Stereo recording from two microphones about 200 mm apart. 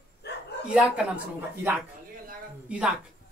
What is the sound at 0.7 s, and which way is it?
Speech, 5° right (ahead or behind).